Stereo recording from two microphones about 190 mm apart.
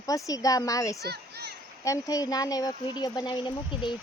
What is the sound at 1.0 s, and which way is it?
Children playing, 60° right (ahead or behind).